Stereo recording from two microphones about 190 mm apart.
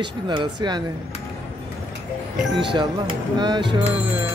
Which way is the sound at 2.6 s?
25° right (ahead or behind).